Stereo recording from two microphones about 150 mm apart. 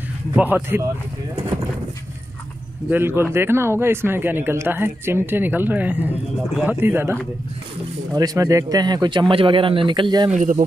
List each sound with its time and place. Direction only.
0.4 s speech: 10° right (ahead or behind)
2.9 s a man's voice: 15° right (ahead or behind)
10.3 s speech: 55° right (ahead or behind)